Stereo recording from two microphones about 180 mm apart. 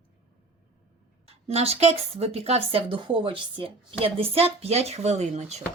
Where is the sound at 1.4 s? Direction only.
35° right (ahead or behind).